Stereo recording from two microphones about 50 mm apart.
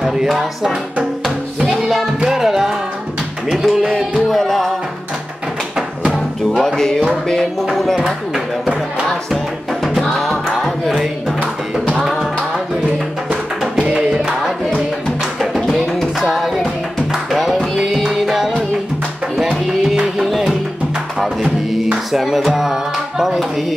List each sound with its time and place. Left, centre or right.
0.0 s music: centre
0.3 s music: centre
2.1 s music: centre
4.3 s music: centre
6.1 s music: centre
7.7 s a sound: centre
10.2 s music: centre
13.8 s music: right
15.5 s music: centre
20.2 s music: centre
22.1 s speech: centre